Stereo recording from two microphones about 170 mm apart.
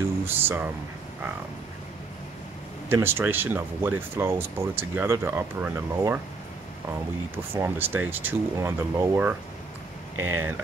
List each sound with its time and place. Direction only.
0.2 s speech: 15° right (ahead or behind)
2.9 s speech: 15° right (ahead or behind)
7.5 s speech: 10° right (ahead or behind)